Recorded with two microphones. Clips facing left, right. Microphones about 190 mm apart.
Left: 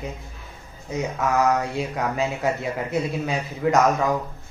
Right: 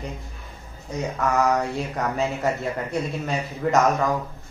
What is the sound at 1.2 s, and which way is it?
Speech, centre (ahead or behind).